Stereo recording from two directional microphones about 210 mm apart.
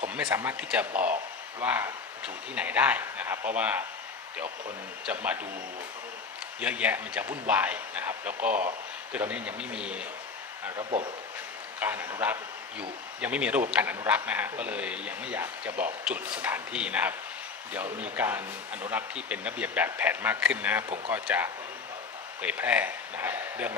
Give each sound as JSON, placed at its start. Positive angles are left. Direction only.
{"t": 0.1, "sound": "speech", "side_deg": -5}
{"t": 5.0, "sound": "speech", "side_deg": -5}
{"t": 6.6, "sound": "a man's voice", "side_deg": -5}
{"t": 10.8, "sound": "speech", "side_deg": -30}
{"t": 11.8, "sound": "speech", "side_deg": -10}